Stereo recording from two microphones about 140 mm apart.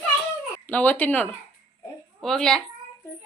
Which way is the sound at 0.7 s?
10° left (ahead or behind).